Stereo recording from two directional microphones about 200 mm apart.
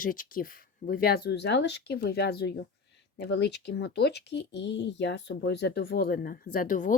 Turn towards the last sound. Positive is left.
turn(degrees=40)  # may be behind; listen again after turning